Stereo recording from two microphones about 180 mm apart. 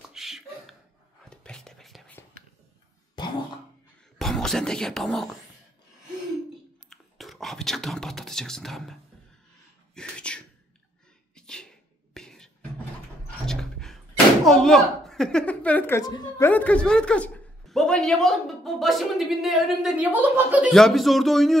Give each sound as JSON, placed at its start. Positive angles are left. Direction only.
{"t": 0.1, "sound": "a sound", "side_deg": 0}
{"t": 1.3, "sound": "whispering", "side_deg": 5}
{"t": 3.2, "sound": "a sound", "side_deg": 25}
{"t": 4.2, "sound": "speech", "side_deg": 0}
{"t": 6.9, "sound": "whispering", "side_deg": 0}
{"t": 9.9, "sound": "sneeze", "side_deg": 5}
{"t": 11.3, "sound": "beatboxing", "side_deg": 5}
{"t": 13.5, "sound": "slam", "side_deg": 5}
{"t": 16.0, "sound": "speech", "side_deg": 20}
{"t": 20.7, "sound": "speech", "side_deg": 0}